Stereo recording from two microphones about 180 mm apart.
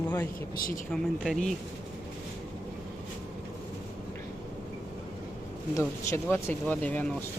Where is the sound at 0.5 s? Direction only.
55° left (ahead or behind).